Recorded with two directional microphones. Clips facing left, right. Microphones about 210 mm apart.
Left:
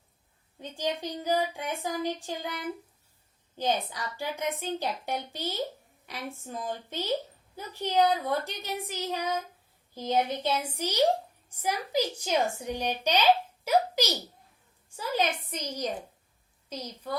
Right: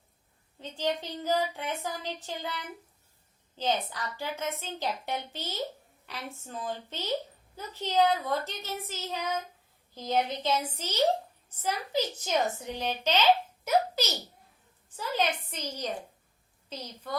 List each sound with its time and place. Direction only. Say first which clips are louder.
0.6 s speech: even; 15° left (ahead or behind)
3.6 s a child's voice: left 1 dB; 15° left (ahead or behind)